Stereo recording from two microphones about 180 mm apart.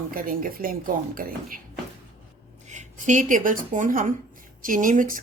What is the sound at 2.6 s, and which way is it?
Speech, 45° right (ahead or behind).